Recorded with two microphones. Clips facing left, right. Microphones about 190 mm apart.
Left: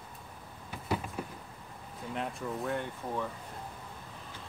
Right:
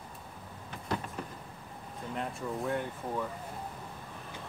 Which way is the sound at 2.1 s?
Centre (ahead or behind).